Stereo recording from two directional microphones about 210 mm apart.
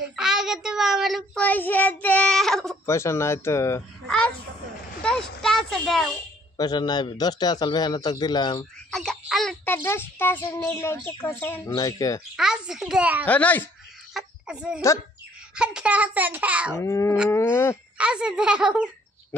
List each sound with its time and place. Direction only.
0.1 s child singing: 5° right (ahead or behind)
2.9 s a child's voice: 15° left (ahead or behind)
5.0 s a sound: 5° left (ahead or behind)
6.5 s a man's voice: 20° left (ahead or behind)
8.9 s a child's voice: 5° left (ahead or behind)
12.4 s child singing: 5° right (ahead or behind)
13.3 s a child's voice: 5° left (ahead or behind)
14.1 s a sound: 5° right (ahead or behind)
15.5 s a child's voice: 5° right (ahead or behind)
16.7 s a child's voice: 10° left (ahead or behind)
17.9 s child singing: 5° right (ahead or behind)